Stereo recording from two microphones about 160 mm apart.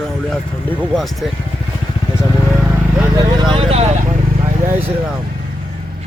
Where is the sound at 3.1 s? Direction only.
30° right (ahead or behind).